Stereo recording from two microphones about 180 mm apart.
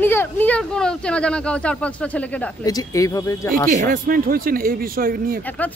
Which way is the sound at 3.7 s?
50° right (ahead or behind).